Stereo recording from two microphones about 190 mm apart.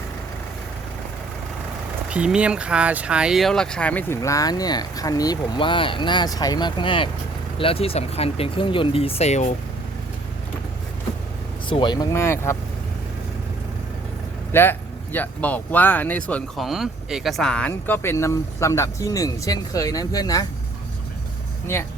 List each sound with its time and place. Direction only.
2.0 s speech: 5° right (ahead or behind); by 9.5 s 35° left (ahead or behind)
11.7 s speech: 25° left (ahead or behind)
14.5 s speech: 10° left (ahead or behind)